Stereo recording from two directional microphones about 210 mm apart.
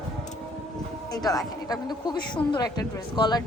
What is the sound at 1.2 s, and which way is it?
A woman's voice, 15° left (ahead or behind).